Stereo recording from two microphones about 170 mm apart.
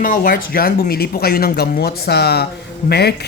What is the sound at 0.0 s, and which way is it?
Speech, 55° left (ahead or behind).